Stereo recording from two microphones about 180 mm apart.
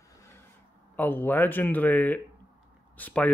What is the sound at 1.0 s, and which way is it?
Speech, 10° left (ahead or behind).